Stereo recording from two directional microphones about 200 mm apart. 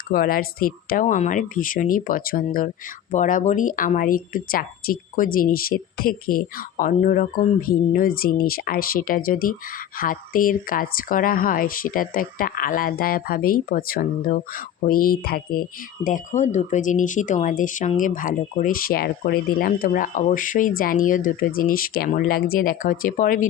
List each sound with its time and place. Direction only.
0.1 s speech: 45° left (ahead or behind)
16.0 s speech: 40° left (ahead or behind)